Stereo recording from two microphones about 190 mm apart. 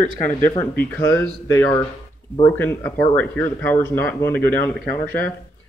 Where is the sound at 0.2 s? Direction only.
10° left (ahead or behind).